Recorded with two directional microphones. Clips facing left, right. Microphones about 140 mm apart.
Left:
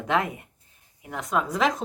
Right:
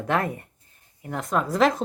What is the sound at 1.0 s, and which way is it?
Speech, centre (ahead or behind).